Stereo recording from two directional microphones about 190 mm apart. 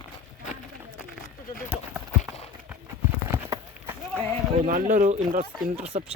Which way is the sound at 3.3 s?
10° right (ahead or behind).